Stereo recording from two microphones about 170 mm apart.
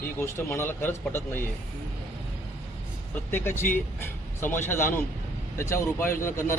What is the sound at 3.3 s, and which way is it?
Speech, 15° left (ahead or behind).